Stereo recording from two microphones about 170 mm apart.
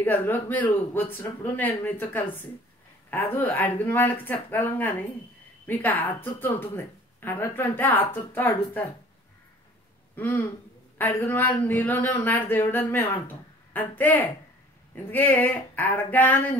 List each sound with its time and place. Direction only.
0.0 s a woman's voice: 10° left (ahead or behind)
10.1 s a woman's voice: 10° left (ahead or behind)